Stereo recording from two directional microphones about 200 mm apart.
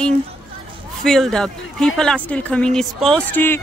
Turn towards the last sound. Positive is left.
turn(degrees=10)  # may be behind; listen again after turning